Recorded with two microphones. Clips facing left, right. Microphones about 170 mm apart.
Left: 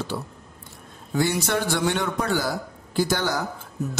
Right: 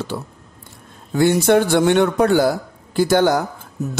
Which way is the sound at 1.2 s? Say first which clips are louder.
Right 9 dB; 55° right (ahead or behind).